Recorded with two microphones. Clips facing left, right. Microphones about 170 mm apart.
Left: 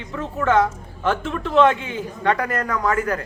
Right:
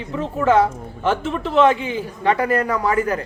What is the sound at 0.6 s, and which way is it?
A woman's voice, 5° right (ahead or behind).